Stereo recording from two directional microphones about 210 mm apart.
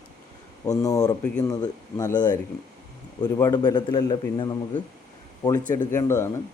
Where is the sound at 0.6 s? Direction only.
15° left (ahead or behind).